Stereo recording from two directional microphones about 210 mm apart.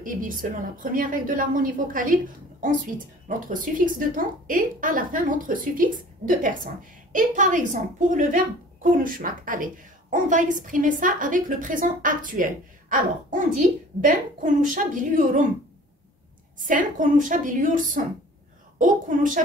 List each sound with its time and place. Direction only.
0.0 s a woman's voice: 40° right (ahead or behind)
3.3 s a woman's voice: 40° right (ahead or behind)
16.6 s a woman's voice: 40° right (ahead or behind)
19.0 s a woman's voice: 40° right (ahead or behind)